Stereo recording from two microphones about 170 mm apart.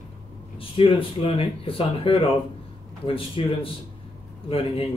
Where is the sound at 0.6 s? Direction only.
30° left (ahead or behind).